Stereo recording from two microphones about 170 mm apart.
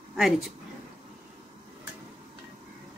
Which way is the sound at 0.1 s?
Centre (ahead or behind).